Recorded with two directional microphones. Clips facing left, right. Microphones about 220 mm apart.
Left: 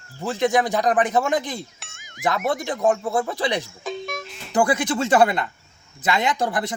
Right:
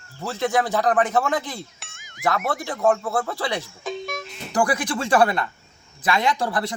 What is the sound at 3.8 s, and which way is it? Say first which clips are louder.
Music: even; centre (ahead or behind).